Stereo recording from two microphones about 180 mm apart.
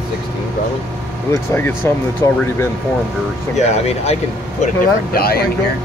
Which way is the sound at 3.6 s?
35° left (ahead or behind).